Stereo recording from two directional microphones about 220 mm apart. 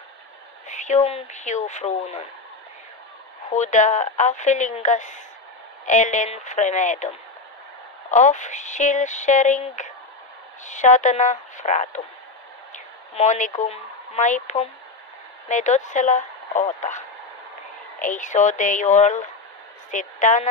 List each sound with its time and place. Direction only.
0.7 s speech: 35° left (ahead or behind)
3.4 s speech: 35° left (ahead or behind)
12.7 s a sound: 30° left (ahead or behind)
13.6 s speech: 30° left (ahead or behind)